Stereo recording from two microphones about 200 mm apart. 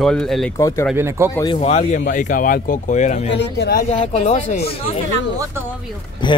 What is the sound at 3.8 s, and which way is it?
Speech, 35° left (ahead or behind).